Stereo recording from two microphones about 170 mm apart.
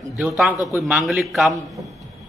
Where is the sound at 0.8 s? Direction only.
10° right (ahead or behind).